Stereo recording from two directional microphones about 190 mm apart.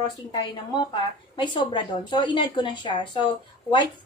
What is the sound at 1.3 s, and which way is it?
A woman's voice, 25° left (ahead or behind).